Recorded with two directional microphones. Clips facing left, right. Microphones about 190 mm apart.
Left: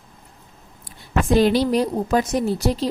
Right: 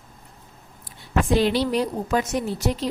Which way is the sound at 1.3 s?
45° left (ahead or behind).